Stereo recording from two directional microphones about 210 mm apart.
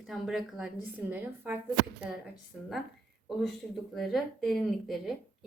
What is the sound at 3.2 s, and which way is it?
A woman's voice, centre (ahead or behind).